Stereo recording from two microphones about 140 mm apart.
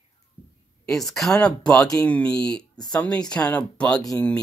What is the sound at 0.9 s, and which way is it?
Speech, centre (ahead or behind).